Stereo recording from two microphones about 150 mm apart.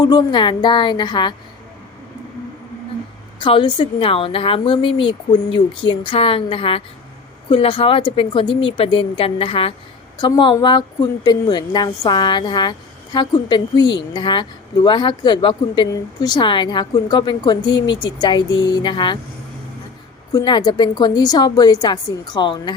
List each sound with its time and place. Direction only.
0.0 s a woman's voice: 30° left (ahead or behind)
3.3 s a woman's voice: 35° left (ahead or behind)
20.3 s a woman's voice: 30° left (ahead or behind)